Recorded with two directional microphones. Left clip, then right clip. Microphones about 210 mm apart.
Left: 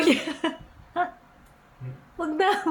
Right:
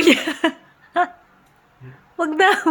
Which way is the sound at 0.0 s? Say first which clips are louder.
Right 7 dB; 40° right (ahead or behind).